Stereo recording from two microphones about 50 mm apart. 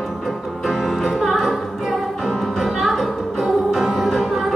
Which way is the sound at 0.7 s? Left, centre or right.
Centre.